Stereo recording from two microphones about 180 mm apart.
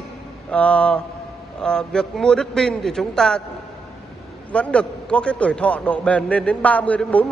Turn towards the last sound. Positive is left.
turn(degrees=10)  # may be behind; listen again after turning